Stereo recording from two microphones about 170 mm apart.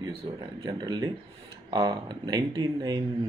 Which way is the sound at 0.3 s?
30° right (ahead or behind).